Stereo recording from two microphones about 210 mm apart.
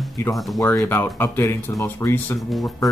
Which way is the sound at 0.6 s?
15° left (ahead or behind).